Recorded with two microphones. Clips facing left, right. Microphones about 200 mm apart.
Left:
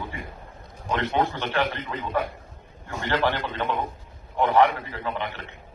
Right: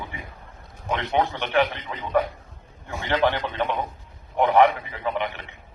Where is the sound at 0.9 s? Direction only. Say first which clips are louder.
Right 1 dB; 15° right (ahead or behind).